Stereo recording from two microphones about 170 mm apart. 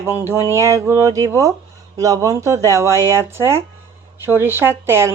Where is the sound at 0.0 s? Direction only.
15° right (ahead or behind).